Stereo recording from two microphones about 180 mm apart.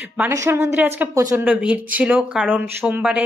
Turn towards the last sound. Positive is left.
turn(degrees=-10)  # may be behind; listen again after turning